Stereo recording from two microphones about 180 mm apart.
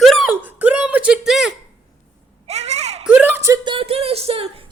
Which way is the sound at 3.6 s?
30° right (ahead or behind).